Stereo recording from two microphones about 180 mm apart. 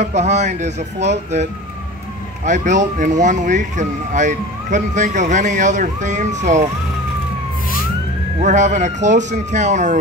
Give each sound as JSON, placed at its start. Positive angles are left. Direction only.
{"t": 0.0, "sound": "speech", "side_deg": -40}
{"t": 8.4, "sound": "speech", "side_deg": -40}